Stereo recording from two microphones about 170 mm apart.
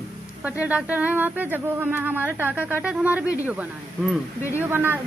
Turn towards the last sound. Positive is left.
turn(degrees=-10)  # may be behind; listen again after turning